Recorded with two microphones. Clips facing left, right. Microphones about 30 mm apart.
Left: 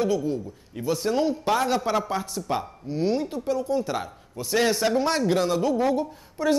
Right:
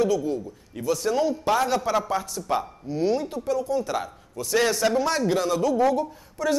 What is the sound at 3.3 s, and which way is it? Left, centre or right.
A man's voice, left.